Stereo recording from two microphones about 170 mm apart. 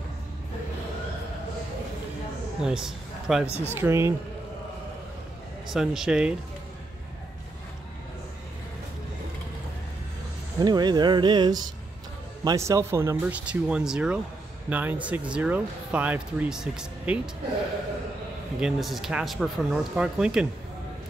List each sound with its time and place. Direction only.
2.6 s a man's voice: 5° right (ahead or behind)
3.4 s speech: 15° left (ahead or behind)
3.7 s speech: 15° right (ahead or behind)
5.7 s speech: centre (ahead or behind)
10.6 s speech: 25° right (ahead or behind); by 17.2 s 5° right (ahead or behind)
18.6 s speech: centre (ahead or behind)